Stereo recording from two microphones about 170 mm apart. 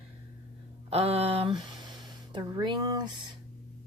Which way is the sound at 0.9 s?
35° right (ahead or behind).